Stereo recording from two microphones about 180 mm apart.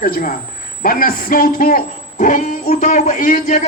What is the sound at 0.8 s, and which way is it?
A man's voice, 50° left (ahead or behind).